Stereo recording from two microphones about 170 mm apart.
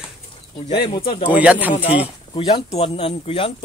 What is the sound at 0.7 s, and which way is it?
Speech, 30° left (ahead or behind).